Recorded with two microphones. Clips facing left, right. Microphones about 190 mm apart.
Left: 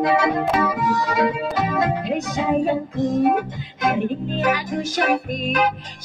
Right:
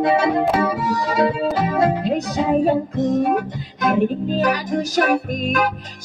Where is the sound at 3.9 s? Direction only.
40° right (ahead or behind).